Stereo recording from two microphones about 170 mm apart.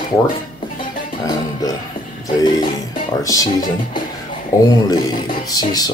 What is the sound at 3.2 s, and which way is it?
Speech, 20° left (ahead or behind).